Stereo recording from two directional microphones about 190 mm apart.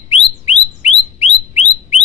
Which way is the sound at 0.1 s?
35° left (ahead or behind).